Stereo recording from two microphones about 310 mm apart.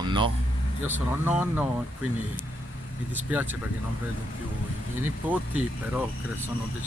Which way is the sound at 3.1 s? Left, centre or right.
Centre.